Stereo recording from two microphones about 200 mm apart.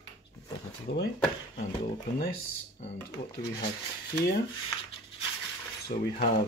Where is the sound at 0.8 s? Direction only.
55° left (ahead or behind).